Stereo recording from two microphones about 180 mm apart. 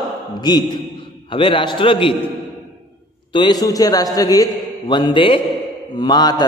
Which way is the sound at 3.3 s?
25° left (ahead or behind).